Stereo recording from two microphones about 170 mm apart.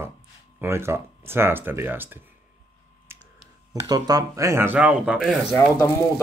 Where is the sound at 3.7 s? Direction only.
20° right (ahead or behind); by 5.4 s 5° right (ahead or behind).